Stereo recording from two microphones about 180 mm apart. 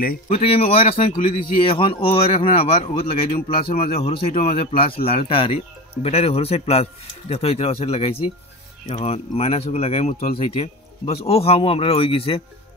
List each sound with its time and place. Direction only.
0.3 s a man's voice: 35° left (ahead or behind)